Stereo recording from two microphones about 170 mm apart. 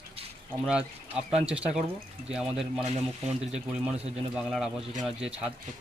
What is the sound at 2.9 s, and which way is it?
Speech, 40° right (ahead or behind).